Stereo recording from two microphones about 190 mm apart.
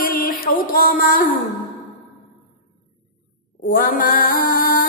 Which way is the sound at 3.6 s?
50° left (ahead or behind).